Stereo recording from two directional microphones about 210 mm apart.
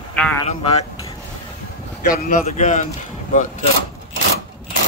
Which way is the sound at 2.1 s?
35° left (ahead or behind).